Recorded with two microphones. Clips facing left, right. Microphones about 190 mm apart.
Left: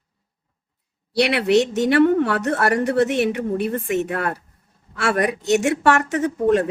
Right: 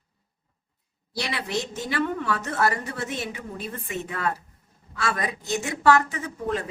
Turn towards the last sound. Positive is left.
turn(degrees=70)  # may be behind; listen again after turning